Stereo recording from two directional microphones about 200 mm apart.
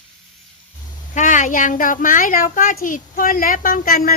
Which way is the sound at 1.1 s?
40° left (ahead or behind).